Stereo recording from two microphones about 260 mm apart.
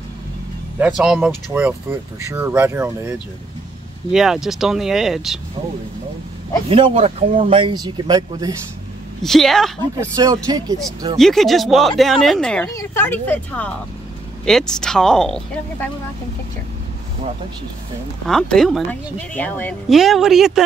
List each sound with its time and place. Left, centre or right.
0.7 s speech: centre
6.7 s speech: right
9.2 s speech: centre
9.9 s speech: centre
11.1 s speech: centre
18.2 s speech: centre